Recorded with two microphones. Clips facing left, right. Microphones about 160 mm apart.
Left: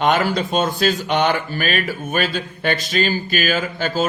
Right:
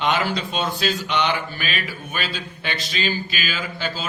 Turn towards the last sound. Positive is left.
turn(degrees=50)  # may be behind; listen again after turning